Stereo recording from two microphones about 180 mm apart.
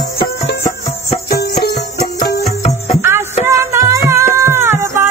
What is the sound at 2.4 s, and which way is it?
Music, 40° left (ahead or behind).